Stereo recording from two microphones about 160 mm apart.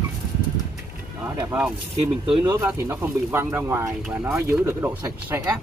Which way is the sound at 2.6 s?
15° right (ahead or behind).